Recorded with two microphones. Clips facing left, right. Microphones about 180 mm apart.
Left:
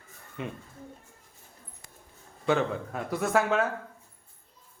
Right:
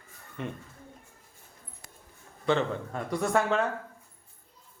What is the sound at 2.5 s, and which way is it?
A child's voice, 5° left (ahead or behind).